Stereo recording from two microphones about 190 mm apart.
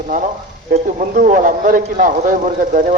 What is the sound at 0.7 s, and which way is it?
A man's voice, 50° right (ahead or behind).